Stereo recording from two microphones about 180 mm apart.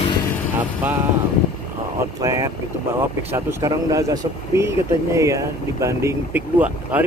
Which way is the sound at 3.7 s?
20° right (ahead or behind).